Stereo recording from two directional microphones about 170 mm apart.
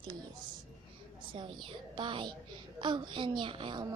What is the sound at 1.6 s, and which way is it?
Speech, 30° right (ahead or behind).